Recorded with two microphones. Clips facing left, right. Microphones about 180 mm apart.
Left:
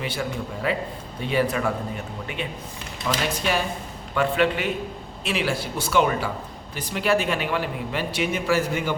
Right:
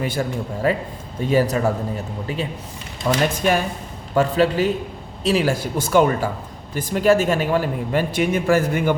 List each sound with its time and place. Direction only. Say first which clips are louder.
0.0 s a man's voice: right 5 dB; 45° right (ahead or behind)